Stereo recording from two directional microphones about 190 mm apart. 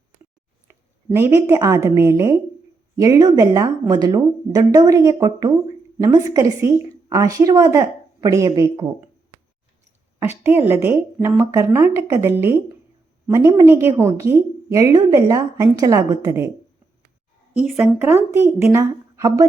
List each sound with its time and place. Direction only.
0.7 s a woman's voice: 15° right (ahead or behind)
10.2 s a woman's voice: 10° right (ahead or behind)
17.7 s a woman's voice: 10° right (ahead or behind)